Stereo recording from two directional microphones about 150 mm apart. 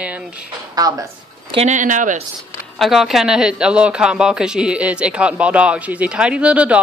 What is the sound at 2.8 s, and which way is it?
Speech, centre (ahead or behind).